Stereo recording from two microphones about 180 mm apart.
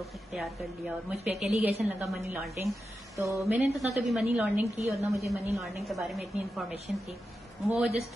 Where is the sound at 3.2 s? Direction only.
15° right (ahead or behind).